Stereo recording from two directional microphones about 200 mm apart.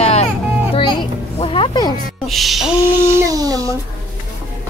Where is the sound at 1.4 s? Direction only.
25° left (ahead or behind).